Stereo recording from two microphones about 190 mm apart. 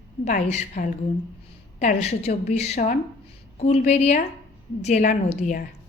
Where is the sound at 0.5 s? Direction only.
40° left (ahead or behind).